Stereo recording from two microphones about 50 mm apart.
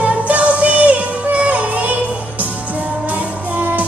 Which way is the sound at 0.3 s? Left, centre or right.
Right.